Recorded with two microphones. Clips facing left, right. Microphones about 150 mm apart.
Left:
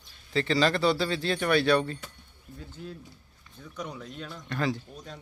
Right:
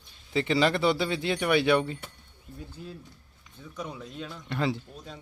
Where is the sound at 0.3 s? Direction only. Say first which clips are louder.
Even; 15° right (ahead or behind).